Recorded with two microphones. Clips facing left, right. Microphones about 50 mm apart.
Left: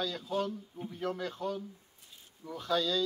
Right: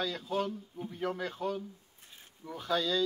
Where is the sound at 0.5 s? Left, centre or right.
Centre.